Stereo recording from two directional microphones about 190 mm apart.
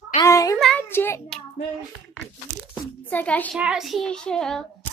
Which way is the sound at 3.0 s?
10° left (ahead or behind).